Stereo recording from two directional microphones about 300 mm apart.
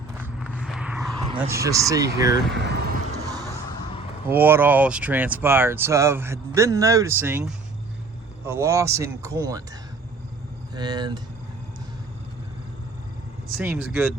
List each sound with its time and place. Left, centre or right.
0.5 s vehicle: centre
1.4 s speech: centre
2.5 s speech: right
4.3 s speech: centre
10.8 s speech: centre
13.6 s speech: centre